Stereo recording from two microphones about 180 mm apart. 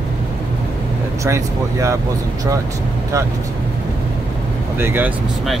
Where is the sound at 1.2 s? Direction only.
15° right (ahead or behind).